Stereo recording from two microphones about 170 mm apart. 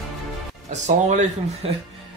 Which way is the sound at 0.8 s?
45° right (ahead or behind).